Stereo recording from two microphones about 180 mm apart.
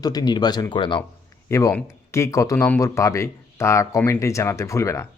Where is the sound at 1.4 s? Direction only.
15° left (ahead or behind).